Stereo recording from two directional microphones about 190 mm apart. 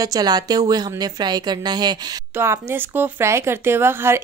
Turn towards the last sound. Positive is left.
turn(degrees=-10)  # may be behind; listen again after turning